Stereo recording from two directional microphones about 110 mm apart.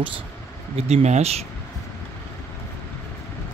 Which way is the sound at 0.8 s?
70° right (ahead or behind).